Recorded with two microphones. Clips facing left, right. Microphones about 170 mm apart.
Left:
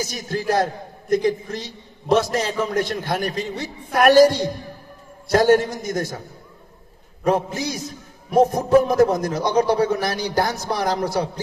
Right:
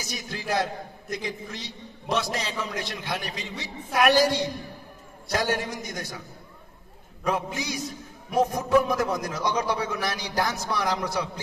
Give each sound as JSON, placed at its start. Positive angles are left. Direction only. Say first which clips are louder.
{"t": 0.0, "sound": "a man's voice", "louder": "left 9 dB", "side_deg": 40}
{"t": 7.2, "sound": "a man's voice", "louder": "left 7 dB", "side_deg": 40}